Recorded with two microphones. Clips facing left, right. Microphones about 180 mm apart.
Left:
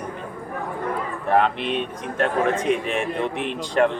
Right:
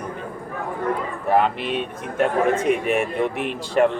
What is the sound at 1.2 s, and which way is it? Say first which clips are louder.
A man's voice: even; 5° right (ahead or behind).